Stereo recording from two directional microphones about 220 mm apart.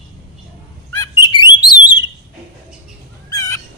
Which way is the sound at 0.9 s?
15° left (ahead or behind).